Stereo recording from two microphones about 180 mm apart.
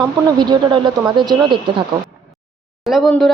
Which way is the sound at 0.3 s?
25° right (ahead or behind).